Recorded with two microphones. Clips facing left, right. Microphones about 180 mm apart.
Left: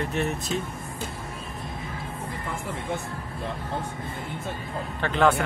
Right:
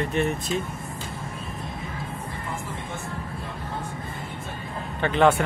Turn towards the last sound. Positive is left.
turn(degrees=-5)  # may be behind; listen again after turning